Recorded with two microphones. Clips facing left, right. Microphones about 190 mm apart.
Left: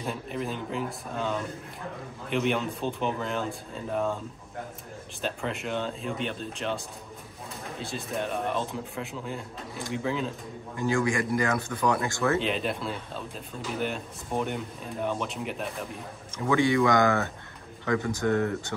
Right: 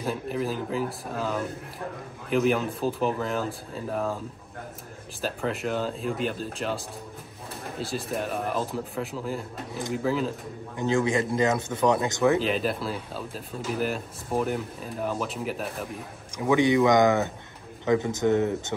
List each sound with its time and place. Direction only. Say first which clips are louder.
0.0 s speech: right 4 dB; centre (ahead or behind)
5.2 s speech: right 3 dB; centre (ahead or behind)
7.8 s speech: right 2 dB; centre (ahead or behind)
10.8 s speech: right 2 dB; 20° right (ahead or behind)
12.4 s speech: right 2 dB; centre (ahead or behind)
16.3 s speech: right 2 dB; 20° right (ahead or behind)